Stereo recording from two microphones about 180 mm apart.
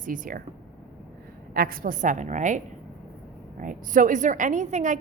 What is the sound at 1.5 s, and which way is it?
A woman's voice, 55° right (ahead or behind).